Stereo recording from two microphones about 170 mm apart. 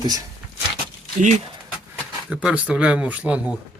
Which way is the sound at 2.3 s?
5° right (ahead or behind).